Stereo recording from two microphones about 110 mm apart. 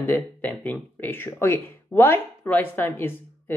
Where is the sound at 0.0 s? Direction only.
20° left (ahead or behind).